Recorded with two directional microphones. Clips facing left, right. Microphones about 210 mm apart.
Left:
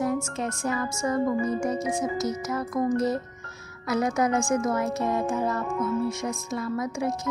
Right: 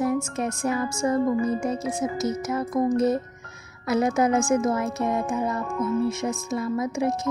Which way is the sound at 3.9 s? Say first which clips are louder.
Right 3 dB; 25° right (ahead or behind).